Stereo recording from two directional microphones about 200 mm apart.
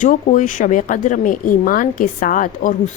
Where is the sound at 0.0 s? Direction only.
40° left (ahead or behind).